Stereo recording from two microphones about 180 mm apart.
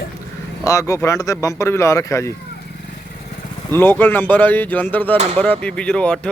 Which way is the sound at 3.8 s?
10° left (ahead or behind).